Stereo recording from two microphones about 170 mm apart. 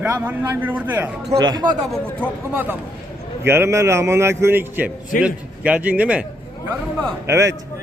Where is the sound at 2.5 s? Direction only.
10° right (ahead or behind).